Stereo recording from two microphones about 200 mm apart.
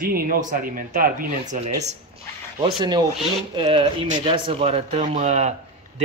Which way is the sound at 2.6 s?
20° right (ahead or behind).